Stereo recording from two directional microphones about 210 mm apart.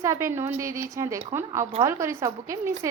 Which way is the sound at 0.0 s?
15° right (ahead or behind).